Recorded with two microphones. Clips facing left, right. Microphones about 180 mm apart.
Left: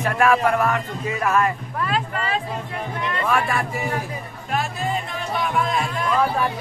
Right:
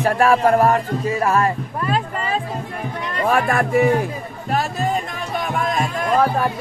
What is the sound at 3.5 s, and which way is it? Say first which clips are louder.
Speech: right 8 dB; 50° right (ahead or behind).